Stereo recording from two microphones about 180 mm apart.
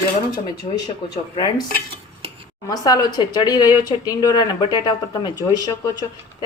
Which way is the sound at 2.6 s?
20° left (ahead or behind).